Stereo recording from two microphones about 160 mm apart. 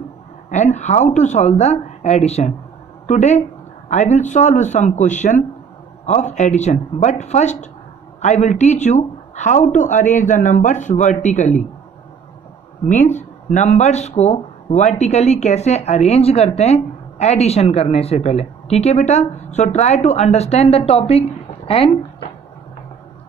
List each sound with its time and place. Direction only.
0.5 s speech: 45° left (ahead or behind)
12.8 s speech: 50° left (ahead or behind)